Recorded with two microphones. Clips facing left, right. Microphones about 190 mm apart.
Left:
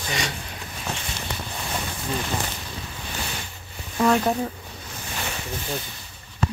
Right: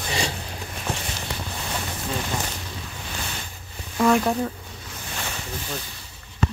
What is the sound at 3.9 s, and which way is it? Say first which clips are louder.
Speech: right 1 dB; centre (ahead or behind).